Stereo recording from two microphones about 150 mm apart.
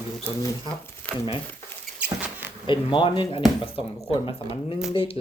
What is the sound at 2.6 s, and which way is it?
Speech, 35° left (ahead or behind).